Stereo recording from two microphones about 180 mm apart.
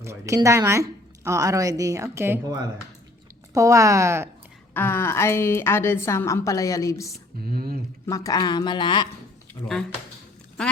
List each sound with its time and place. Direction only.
0.0 s a woman's voice: 15° right (ahead or behind)
4.7 s a woman's voice: 10° left (ahead or behind)
7.5 s speech: 55° right (ahead or behind)
8.0 s a woman's voice: 20° left (ahead or behind)